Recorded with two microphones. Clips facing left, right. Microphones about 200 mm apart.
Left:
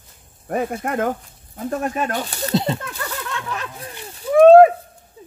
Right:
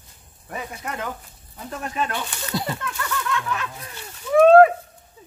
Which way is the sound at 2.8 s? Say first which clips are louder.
Right 2 dB; 35° left (ahead or behind).